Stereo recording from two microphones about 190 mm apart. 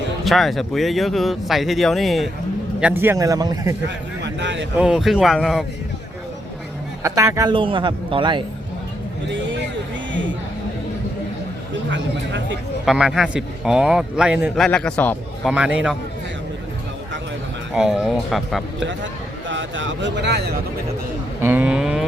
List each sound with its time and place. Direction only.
0.3 s a man's voice: centre (ahead or behind)
2.8 s a man's voice: 10° right (ahead or behind)
3.8 s a sound: 65° right (ahead or behind)
4.8 s a man's voice: 5° right (ahead or behind)
7.0 s a man's voice: 15° right (ahead or behind)
10.1 s a sound: 75° right (ahead or behind)
11.9 s speech: 75° right (ahead or behind)
12.8 s a man's voice: centre (ahead or behind)
15.5 s a man's voice: 5° right (ahead or behind)
17.7 s a man's voice: 5° right (ahead or behind)
19.5 s speech: 75° right (ahead or behind); by 20.6 s 60° right (ahead or behind)
21.4 s a man's voice: 10° right (ahead or behind)